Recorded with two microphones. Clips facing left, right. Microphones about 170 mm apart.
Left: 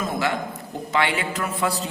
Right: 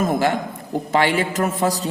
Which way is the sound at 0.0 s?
45° right (ahead or behind).